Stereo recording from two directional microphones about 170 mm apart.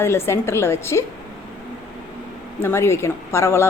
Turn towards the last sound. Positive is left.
turn(degrees=15)  # may be behind; listen again after turning